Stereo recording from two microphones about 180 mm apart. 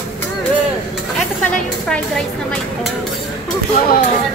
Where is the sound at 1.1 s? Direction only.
5° left (ahead or behind).